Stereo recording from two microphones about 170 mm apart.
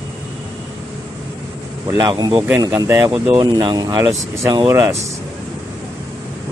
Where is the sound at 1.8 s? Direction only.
20° right (ahead or behind).